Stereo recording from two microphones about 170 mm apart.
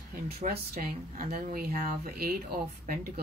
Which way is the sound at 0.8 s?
55° right (ahead or behind).